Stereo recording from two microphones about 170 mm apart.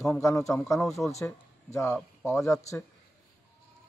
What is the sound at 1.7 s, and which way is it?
A man's voice, 15° left (ahead or behind).